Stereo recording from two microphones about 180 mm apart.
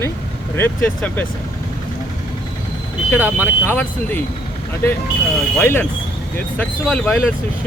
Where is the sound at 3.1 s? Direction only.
15° left (ahead or behind).